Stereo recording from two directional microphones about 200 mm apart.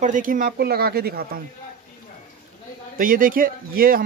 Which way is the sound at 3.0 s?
45° right (ahead or behind).